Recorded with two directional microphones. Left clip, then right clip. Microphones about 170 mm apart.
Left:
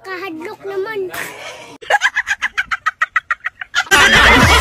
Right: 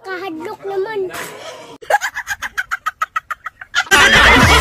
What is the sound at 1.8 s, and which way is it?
Chicken, 20° right (ahead or behind).